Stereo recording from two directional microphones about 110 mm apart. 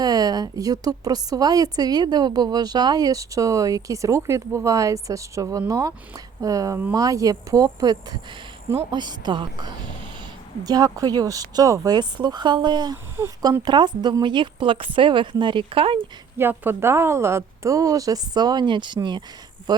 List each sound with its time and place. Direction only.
0.0 s a woman's voice: 35° right (ahead or behind); by 16.0 s 55° right (ahead or behind)
16.4 s a woman's voice: 20° right (ahead or behind); by 19.2 s 45° right (ahead or behind)